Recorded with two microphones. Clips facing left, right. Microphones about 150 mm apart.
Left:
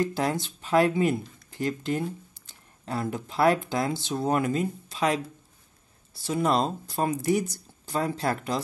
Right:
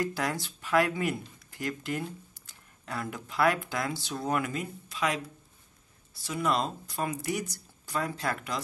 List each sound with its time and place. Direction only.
0.0 s speech: 25° left (ahead or behind)